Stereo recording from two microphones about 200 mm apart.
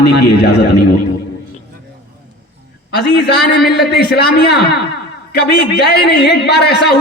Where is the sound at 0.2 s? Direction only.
55° left (ahead or behind).